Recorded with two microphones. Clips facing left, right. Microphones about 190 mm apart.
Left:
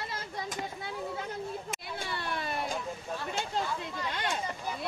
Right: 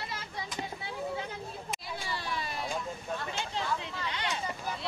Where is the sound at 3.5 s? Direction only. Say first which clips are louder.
Left 1 dB; 50° left (ahead or behind).